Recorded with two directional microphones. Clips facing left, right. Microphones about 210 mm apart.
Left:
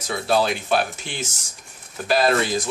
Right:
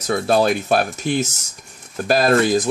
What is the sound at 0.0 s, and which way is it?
Speech, 45° right (ahead or behind).